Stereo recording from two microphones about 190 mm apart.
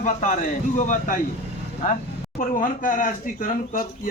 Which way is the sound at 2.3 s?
45° left (ahead or behind).